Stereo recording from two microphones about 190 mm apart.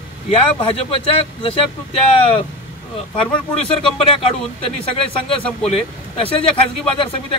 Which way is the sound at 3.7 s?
30° left (ahead or behind).